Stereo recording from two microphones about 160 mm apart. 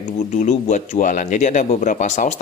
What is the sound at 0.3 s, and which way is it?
Speech, 50° left (ahead or behind).